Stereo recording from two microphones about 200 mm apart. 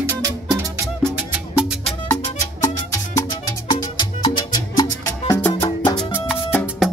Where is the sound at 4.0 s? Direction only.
20° left (ahead or behind).